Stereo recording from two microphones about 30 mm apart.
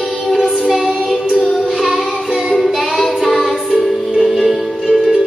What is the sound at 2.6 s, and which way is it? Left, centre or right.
Child singing, centre.